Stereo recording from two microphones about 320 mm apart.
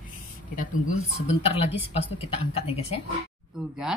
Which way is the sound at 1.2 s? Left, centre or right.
Centre.